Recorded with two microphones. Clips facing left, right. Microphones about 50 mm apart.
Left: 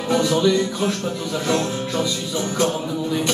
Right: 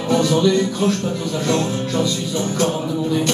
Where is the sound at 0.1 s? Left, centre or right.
Centre.